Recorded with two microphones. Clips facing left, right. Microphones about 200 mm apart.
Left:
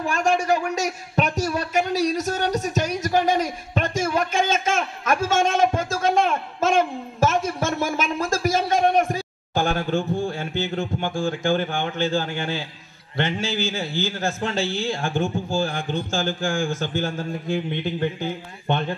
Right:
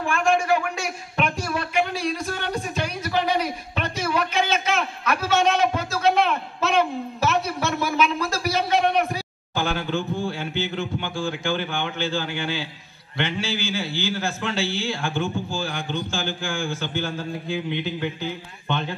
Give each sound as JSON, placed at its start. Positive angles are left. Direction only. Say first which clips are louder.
{"t": 0.0, "sound": "a woman's voice", "louder": "even", "side_deg": 40}